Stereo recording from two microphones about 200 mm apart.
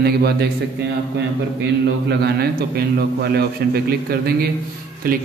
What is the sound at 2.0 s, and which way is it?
A man's voice, 55° right (ahead or behind).